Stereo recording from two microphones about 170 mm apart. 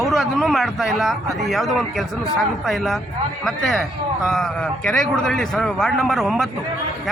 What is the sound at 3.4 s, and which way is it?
Speech, centre (ahead or behind).